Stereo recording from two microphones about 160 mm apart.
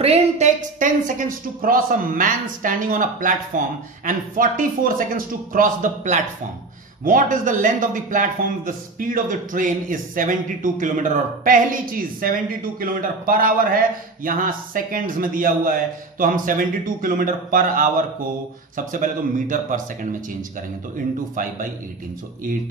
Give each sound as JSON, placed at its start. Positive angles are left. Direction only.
{"t": 0.0, "sound": "speech", "side_deg": -45}